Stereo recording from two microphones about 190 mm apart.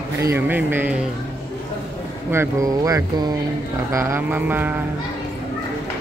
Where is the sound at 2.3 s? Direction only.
15° right (ahead or behind).